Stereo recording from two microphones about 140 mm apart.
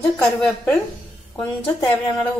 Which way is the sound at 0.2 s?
5° left (ahead or behind).